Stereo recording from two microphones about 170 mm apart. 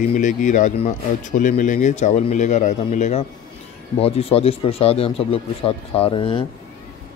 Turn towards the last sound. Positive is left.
turn(degrees=30)  # may be behind; listen again after turning